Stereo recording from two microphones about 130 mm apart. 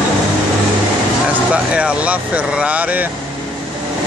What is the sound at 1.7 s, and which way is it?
Speech, 10° right (ahead or behind).